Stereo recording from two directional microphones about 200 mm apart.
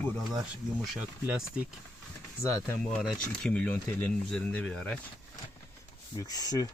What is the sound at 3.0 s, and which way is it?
Speech, 5° left (ahead or behind).